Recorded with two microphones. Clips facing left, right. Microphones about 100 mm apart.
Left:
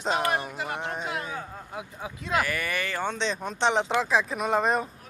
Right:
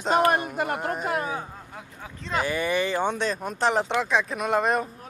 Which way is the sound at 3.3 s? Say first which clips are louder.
Right 1 dB; 5° right (ahead or behind).